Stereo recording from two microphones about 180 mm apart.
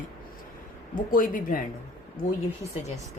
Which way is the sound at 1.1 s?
50° left (ahead or behind).